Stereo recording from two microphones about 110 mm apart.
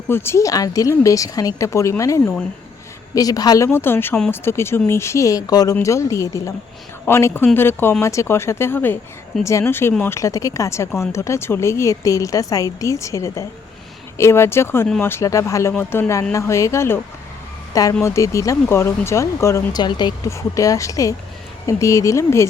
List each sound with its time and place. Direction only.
0.1 s speech: 20° left (ahead or behind)
3.7 s speech: 20° left (ahead or behind)
18.0 s speech: 30° left (ahead or behind)
19.7 s speech: 40° left (ahead or behind)
20.3 s speech: 30° left (ahead or behind)